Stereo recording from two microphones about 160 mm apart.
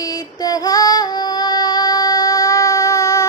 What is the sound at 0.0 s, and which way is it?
Female singing, 25° left (ahead or behind).